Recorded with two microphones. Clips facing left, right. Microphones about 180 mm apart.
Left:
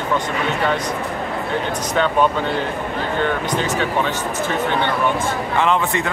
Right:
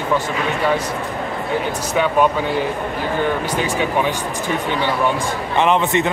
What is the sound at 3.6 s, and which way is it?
Speech, 15° right (ahead or behind).